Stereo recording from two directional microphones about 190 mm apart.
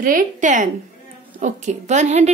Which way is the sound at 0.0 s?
45° right (ahead or behind).